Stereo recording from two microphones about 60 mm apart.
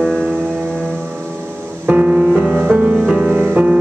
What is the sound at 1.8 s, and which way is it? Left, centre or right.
Music, right.